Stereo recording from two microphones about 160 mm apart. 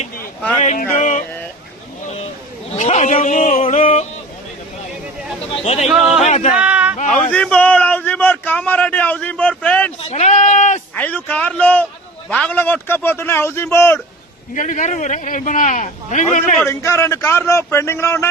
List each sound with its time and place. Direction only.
0.6 s a man's voice: 50° left (ahead or behind)
2.7 s speech: 45° left (ahead or behind)
5.6 s a man's voice: 45° left (ahead or behind)
6.6 s a sound: 10° right (ahead or behind)
7.1 s a sound: 5° left (ahead or behind)
10.0 s a sound: 40° left (ahead or behind)
10.9 s a man's voice: 10° left (ahead or behind)
14.5 s a man's voice: 55° left (ahead or behind)
16.6 s a man's voice: 15° left (ahead or behind)